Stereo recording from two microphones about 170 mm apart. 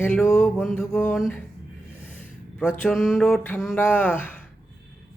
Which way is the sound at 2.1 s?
5° left (ahead or behind).